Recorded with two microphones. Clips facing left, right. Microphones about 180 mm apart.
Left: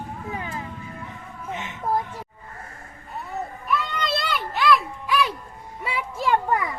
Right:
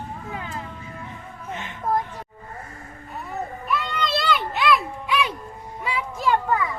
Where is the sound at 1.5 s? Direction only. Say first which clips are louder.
Left 1 dB; 15° left (ahead or behind).